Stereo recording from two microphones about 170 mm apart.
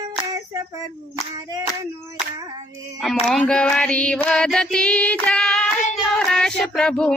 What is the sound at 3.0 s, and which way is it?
Female singing, 5° left (ahead or behind).